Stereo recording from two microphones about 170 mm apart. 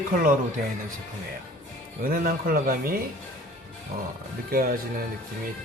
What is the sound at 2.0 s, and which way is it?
Speech, 55° right (ahead or behind).